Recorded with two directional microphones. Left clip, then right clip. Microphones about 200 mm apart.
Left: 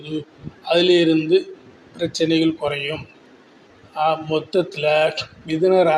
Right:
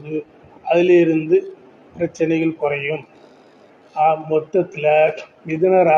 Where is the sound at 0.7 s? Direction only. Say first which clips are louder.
Right 2 dB; 25° left (ahead or behind).